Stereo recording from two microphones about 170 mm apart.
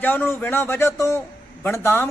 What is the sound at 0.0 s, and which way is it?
Speech, 10° left (ahead or behind).